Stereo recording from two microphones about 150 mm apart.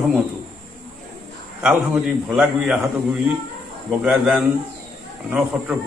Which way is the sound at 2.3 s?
5° right (ahead or behind).